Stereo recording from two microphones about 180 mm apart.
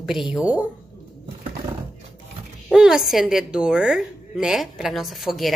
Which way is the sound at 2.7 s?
Centre (ahead or behind).